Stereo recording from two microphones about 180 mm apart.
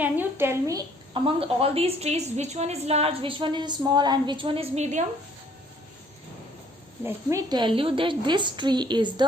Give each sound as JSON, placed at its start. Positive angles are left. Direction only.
{"t": 0.0, "sound": "a woman's voice", "side_deg": -10}
{"t": 1.1, "sound": "a woman's voice", "side_deg": -30}
{"t": 7.0, "sound": "a woman's voice", "side_deg": -15}